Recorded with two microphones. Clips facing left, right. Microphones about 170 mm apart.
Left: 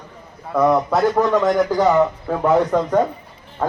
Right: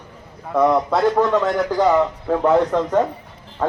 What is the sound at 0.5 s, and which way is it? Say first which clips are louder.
Speech: even; 5° left (ahead or behind).